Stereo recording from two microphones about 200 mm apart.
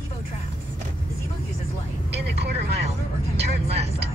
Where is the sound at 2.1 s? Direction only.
55° right (ahead or behind).